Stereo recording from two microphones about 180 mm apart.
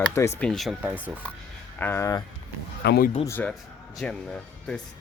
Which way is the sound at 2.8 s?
60° left (ahead or behind).